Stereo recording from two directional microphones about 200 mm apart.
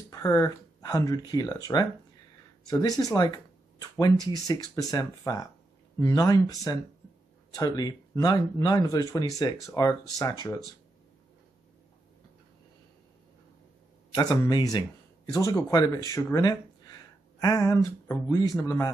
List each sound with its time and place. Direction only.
0.1 s speech: 15° left (ahead or behind)
14.1 s speech: 20° left (ahead or behind)